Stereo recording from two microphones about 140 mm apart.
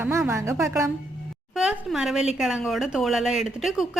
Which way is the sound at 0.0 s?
20° right (ahead or behind).